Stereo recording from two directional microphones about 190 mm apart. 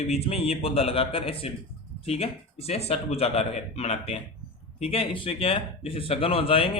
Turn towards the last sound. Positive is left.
turn(degrees=30)  # may be behind; listen again after turning